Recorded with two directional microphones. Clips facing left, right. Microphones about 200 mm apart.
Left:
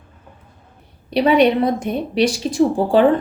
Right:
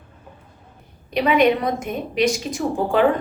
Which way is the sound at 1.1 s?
35° left (ahead or behind).